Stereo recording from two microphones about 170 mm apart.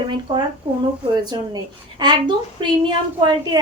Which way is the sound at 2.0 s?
25° right (ahead or behind).